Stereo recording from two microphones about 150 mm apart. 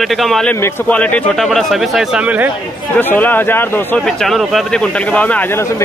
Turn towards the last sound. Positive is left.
turn(degrees=10)  # may be behind; listen again after turning